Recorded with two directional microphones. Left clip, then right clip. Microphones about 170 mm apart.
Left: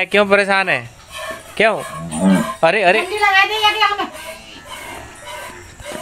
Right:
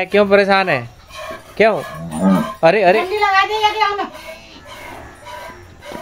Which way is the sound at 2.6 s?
5° right (ahead or behind).